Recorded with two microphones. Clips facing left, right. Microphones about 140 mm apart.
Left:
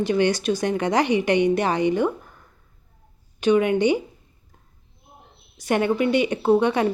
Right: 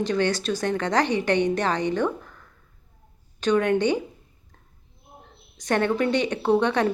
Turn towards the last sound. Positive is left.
turn(degrees=10)  # may be behind; listen again after turning